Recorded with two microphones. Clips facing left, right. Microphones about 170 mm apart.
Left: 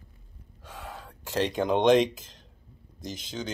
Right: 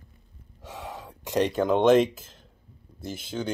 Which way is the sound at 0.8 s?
20° right (ahead or behind).